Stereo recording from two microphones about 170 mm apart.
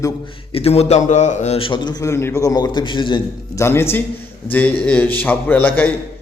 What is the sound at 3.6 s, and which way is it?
A man's voice, 15° left (ahead or behind).